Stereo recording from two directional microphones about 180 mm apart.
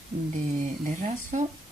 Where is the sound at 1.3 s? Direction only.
40° right (ahead or behind).